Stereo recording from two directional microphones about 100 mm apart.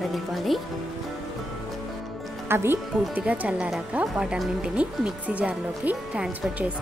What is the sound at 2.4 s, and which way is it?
Speech, 25° right (ahead or behind).